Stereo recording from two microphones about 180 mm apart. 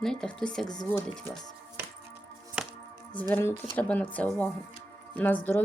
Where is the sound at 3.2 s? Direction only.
10° left (ahead or behind).